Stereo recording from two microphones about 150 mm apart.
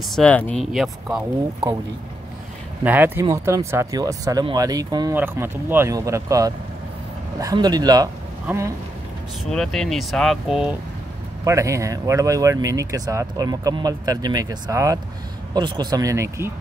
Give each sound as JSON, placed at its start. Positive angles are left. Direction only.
{"t": 0.1, "sound": "speech", "side_deg": 5}
{"t": 1.0, "sound": "speech", "side_deg": -10}
{"t": 2.8, "sound": "speech", "side_deg": -10}
{"t": 5.1, "sound": "speech", "side_deg": -15}
{"t": 9.4, "sound": "speech", "side_deg": 5}
{"t": 11.4, "sound": "speech", "side_deg": -20}